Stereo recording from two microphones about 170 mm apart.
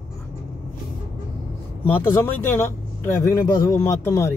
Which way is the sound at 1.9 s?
15° left (ahead or behind).